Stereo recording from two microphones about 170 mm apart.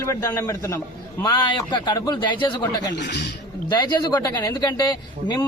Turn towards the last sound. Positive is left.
turn(degrees=25)  # may be behind; listen again after turning